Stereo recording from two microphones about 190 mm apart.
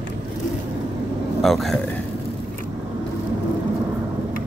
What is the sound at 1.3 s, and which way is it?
Speech, centre (ahead or behind).